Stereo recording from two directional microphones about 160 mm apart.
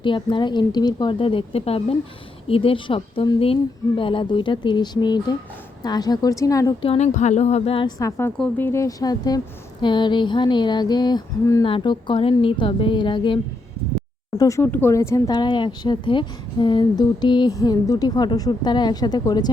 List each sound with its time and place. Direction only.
0.0 s a woman's voice: 30° left (ahead or behind)
6.8 s a woman's voice: 40° left (ahead or behind)
14.3 s speech: 20° left (ahead or behind)